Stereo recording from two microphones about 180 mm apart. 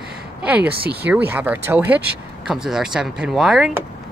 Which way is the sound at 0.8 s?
60° right (ahead or behind).